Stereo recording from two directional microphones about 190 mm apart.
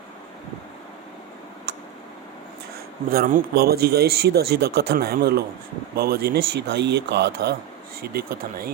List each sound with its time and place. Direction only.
3.1 s speech: 50° right (ahead or behind)